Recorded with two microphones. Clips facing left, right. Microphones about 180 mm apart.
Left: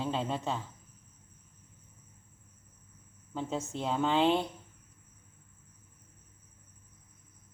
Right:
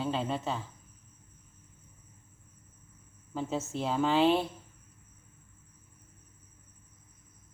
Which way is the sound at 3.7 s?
5° right (ahead or behind).